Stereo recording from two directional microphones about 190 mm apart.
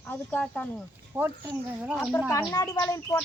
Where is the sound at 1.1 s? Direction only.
10° right (ahead or behind).